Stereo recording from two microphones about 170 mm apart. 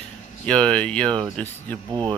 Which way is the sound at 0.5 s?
5° left (ahead or behind).